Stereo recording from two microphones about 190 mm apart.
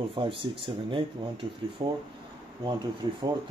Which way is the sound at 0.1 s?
25° right (ahead or behind).